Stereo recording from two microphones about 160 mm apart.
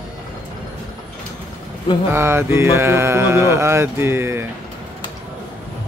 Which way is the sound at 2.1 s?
15° right (ahead or behind).